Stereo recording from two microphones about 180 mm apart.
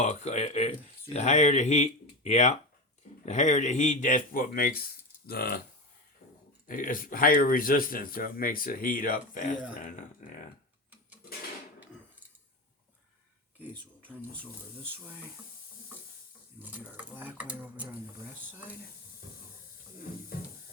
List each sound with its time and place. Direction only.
0.0 s speech: 40° left (ahead or behind); by 5.6 s 60° left (ahead or behind)
6.7 s speech: 50° left (ahead or behind)
16.6 s speech: 10° right (ahead or behind)